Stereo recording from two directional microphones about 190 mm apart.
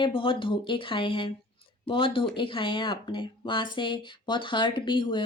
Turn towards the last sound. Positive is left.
turn(degrees=25)  # may be behind; listen again after turning